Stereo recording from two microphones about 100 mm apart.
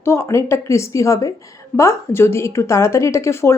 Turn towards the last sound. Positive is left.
turn(degrees=25)  # may be behind; listen again after turning